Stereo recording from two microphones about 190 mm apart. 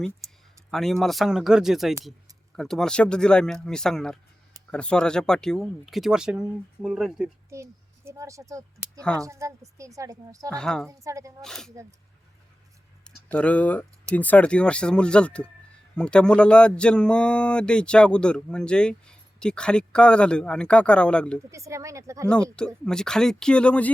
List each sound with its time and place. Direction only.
0.7 s speech: centre (ahead or behind)
7.5 s a child's voice: 15° right (ahead or behind)
9.0 s speech: 5° left (ahead or behind)
9.2 s a woman's voice: 15° right (ahead or behind)
10.5 s speech: 5° left (ahead or behind)
10.8 s a woman's voice: 15° right (ahead or behind)
11.4 s speech: 5° left (ahead or behind)
11.7 s a woman's voice: 15° right (ahead or behind)
13.1 s speech: 5° left (ahead or behind)
21.5 s a woman's voice: 15° right (ahead or behind)
22.5 s speech: 5° left (ahead or behind)